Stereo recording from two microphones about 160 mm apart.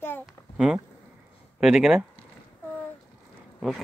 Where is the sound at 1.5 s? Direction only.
5° right (ahead or behind).